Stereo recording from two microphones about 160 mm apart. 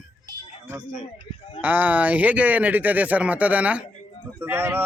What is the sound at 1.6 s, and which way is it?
Speech, 10° right (ahead or behind).